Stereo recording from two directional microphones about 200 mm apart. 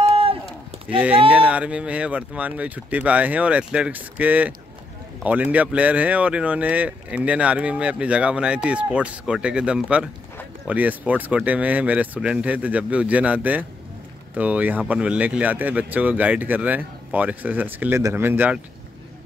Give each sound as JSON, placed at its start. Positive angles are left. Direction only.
{"t": 0.0, "sound": "run", "side_deg": -30}
{"t": 0.8, "sound": "speech", "side_deg": -5}